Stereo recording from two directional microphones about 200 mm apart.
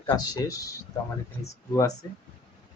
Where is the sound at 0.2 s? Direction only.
15° left (ahead or behind).